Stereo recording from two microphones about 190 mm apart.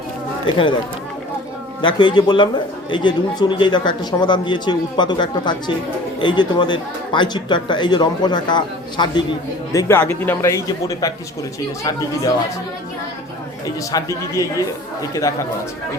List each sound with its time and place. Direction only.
0.4 s speech: 25° left (ahead or behind)
1.8 s speech: 25° left (ahead or behind)
9.7 s a man's voice: 10° left (ahead or behind)
13.9 s a man's voice: 15° left (ahead or behind)